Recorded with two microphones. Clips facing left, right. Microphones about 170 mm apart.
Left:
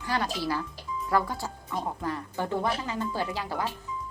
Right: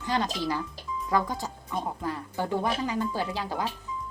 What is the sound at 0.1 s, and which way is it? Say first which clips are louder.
A woman's voice: right 1 dB; 20° right (ahead or behind).